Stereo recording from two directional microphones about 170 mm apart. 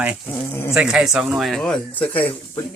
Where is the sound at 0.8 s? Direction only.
5° right (ahead or behind).